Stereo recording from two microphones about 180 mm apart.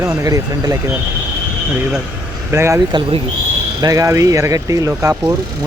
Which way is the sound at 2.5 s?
15° right (ahead or behind).